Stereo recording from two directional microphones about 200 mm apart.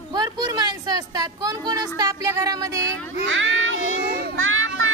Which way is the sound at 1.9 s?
15° right (ahead or behind).